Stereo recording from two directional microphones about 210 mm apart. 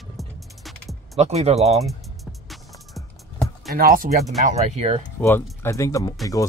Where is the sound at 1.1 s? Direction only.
30° right (ahead or behind).